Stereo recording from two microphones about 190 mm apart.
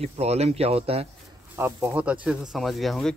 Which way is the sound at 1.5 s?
10° right (ahead or behind).